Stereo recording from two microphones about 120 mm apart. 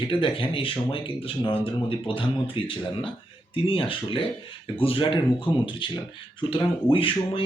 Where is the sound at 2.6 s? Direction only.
45° left (ahead or behind).